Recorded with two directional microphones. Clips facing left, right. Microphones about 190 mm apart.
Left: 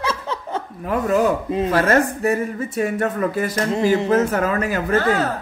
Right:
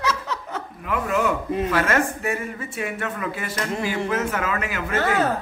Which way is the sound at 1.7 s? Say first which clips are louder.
Left 6 dB; 40° left (ahead or behind).